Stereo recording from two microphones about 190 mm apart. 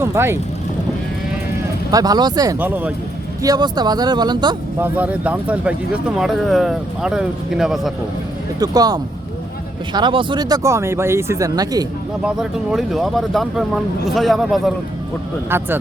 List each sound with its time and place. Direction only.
0.0 s speech: 15° right (ahead or behind)
1.9 s speech: 20° right (ahead or behind)
3.4 s speech: 20° right (ahead or behind)
4.8 s speech: 10° right (ahead or behind)
8.5 s speech: 20° right (ahead or behind)
12.2 s speech: centre (ahead or behind)
15.4 s speech: 10° right (ahead or behind)